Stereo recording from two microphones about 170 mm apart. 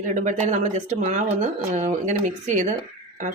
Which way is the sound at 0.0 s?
45° right (ahead or behind).